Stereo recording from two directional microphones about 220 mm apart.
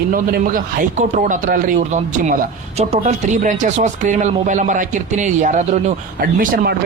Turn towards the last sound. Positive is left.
turn(degrees=-40)  # may be behind; listen again after turning